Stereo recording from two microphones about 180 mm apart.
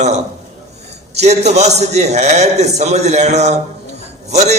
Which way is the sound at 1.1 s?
35° right (ahead or behind).